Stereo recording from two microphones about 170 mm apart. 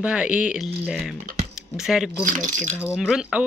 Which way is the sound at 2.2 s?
45° right (ahead or behind).